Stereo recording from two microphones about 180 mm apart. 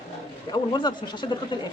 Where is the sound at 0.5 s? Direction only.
25° left (ahead or behind).